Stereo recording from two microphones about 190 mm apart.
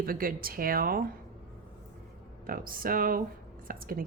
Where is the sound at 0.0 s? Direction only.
50° right (ahead or behind).